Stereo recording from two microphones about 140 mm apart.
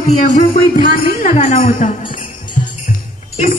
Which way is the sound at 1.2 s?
55° left (ahead or behind).